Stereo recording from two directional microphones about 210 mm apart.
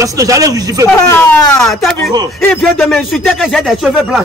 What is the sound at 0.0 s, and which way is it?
Speech, 15° right (ahead or behind).